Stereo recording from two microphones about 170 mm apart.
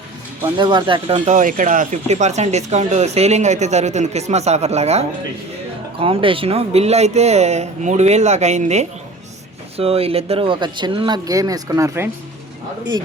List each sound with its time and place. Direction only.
0.4 s speech: 25° right (ahead or behind)